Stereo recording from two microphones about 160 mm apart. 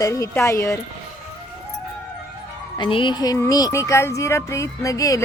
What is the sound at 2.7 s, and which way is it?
Speech, 30° left (ahead or behind).